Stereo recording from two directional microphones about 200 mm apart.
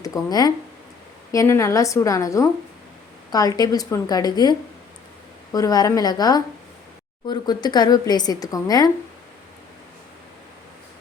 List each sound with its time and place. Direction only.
0.0 s a woman's voice: 20° left (ahead or behind)